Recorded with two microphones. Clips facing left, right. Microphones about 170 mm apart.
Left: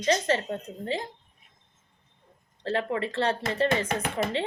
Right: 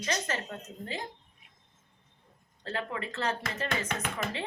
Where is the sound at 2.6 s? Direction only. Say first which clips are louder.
Left 7 dB; 30° left (ahead or behind).